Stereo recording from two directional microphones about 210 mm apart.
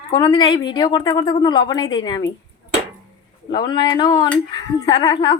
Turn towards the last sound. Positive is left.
turn(degrees=25)  # may be behind; listen again after turning